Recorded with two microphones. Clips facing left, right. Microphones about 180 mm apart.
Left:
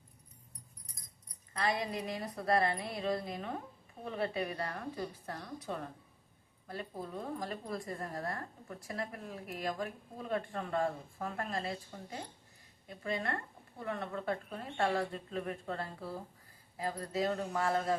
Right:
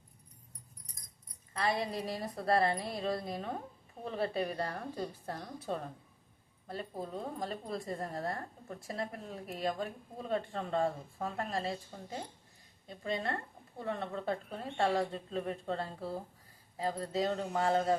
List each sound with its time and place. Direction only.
1.5 s a woman's voice: 30° right (ahead or behind)
12.9 s speech: 25° right (ahead or behind)